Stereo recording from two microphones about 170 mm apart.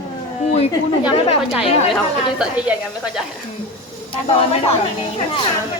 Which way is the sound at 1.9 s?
5° right (ahead or behind).